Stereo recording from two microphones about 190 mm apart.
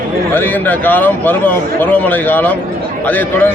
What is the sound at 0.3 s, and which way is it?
A man's voice, 10° left (ahead or behind).